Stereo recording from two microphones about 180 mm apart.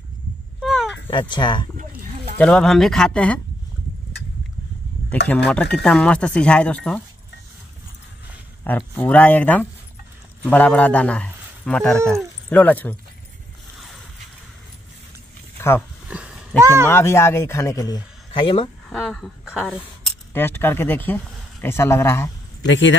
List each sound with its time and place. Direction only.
0.6 s a sound: centre (ahead or behind)
1.3 s speech: 25° left (ahead or behind)
2.3 s speech: 5° left (ahead or behind)
5.3 s speech: 5° left (ahead or behind)
8.6 s a man's voice: 10° left (ahead or behind)
16.1 s a sound: 5° right (ahead or behind)
16.9 s a man's voice: 15° left (ahead or behind)
18.9 s speech: centre (ahead or behind)
20.3 s speech: 10° left (ahead or behind)
22.7 s speech: 90° left